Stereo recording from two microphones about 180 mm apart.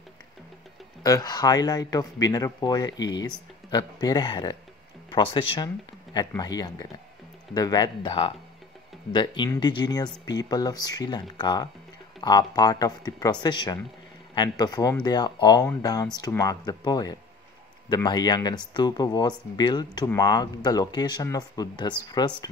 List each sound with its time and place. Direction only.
1.0 s speech: 20° left (ahead or behind)